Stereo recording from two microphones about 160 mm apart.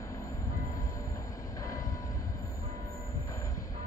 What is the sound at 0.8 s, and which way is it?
Train, 20° left (ahead or behind).